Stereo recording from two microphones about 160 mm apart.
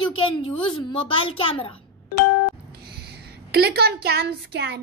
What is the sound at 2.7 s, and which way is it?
A woman's voice, 80° right.